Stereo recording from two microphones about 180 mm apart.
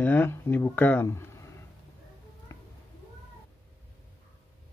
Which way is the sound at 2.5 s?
15° left (ahead or behind).